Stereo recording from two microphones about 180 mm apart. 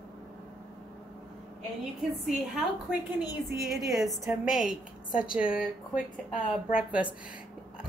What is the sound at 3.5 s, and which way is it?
A woman's voice, centre (ahead or behind).